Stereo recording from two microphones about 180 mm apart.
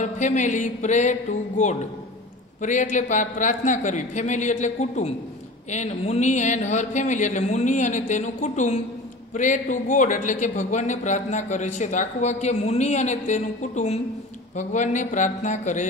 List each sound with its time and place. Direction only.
0.0 s a man's voice: 40° left (ahead or behind)